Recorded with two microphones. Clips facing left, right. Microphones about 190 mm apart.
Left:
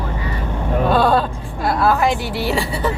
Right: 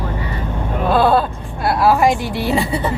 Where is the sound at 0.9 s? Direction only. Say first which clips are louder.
Right 2 dB; 5° right (ahead or behind); by 2.8 s 20° right (ahead or behind).